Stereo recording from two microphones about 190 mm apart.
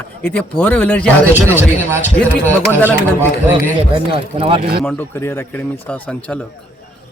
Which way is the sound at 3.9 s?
25° right (ahead or behind).